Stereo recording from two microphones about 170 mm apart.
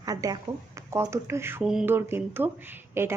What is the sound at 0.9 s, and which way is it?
A woman's voice, 15° right (ahead or behind).